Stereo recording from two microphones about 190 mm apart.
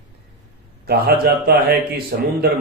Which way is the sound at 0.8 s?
55° right (ahead or behind).